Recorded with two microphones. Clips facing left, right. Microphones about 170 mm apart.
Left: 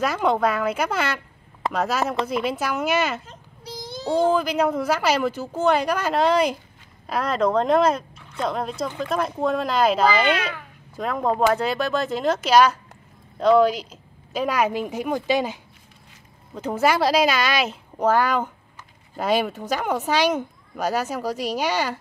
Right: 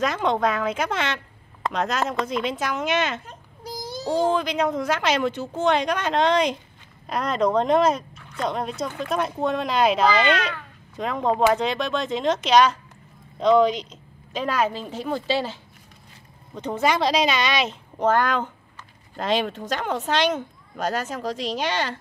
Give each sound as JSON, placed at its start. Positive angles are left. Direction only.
{"t": 0.0, "sound": "speech", "side_deg": 5}
{"t": 3.3, "sound": "a sound", "side_deg": -45}
{"t": 4.3, "sound": "speech", "side_deg": 5}
{"t": 16.5, "sound": "speech", "side_deg": 5}